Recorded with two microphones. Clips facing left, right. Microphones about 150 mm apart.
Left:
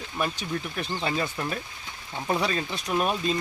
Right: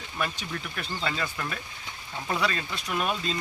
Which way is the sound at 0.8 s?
20° left (ahead or behind).